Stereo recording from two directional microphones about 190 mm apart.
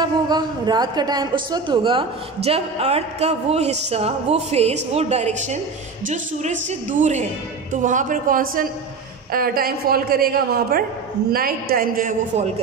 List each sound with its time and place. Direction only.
0.0 s a woman's voice: 20° right (ahead or behind); by 12.4 s 45° right (ahead or behind)